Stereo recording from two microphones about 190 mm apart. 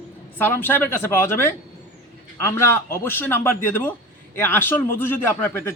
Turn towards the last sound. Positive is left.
turn(degrees=10)  # may be behind; listen again after turning